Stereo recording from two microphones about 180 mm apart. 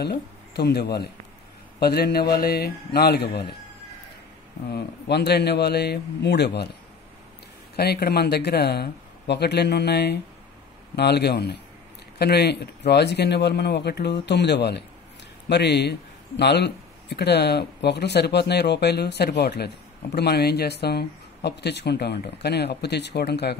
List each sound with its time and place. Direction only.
0.6 s speech: 65° left (ahead or behind)
4.7 s speech: 65° left (ahead or behind)
7.7 s speech: 60° left (ahead or behind)